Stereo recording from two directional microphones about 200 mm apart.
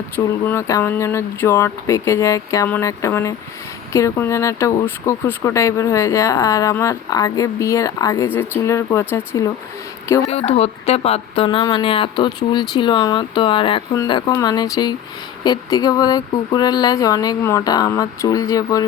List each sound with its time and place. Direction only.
0.4 s speech: 15° left (ahead or behind)
10.2 s speech: 30° left (ahead or behind)